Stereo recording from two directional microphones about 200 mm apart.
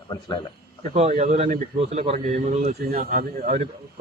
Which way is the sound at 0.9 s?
35° right (ahead or behind).